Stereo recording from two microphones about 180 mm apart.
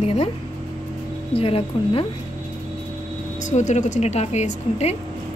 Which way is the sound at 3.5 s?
40° left (ahead or behind).